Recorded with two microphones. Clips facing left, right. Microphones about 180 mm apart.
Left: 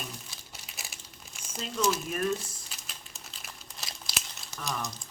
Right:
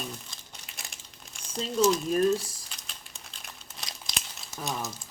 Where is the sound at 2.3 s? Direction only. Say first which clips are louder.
Right 4 dB; 5° left (ahead or behind).